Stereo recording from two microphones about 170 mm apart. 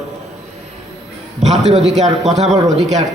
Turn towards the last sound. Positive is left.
turn(degrees=-45)  # may be behind; listen again after turning